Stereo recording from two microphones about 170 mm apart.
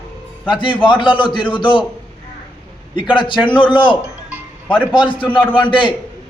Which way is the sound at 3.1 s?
30° left (ahead or behind).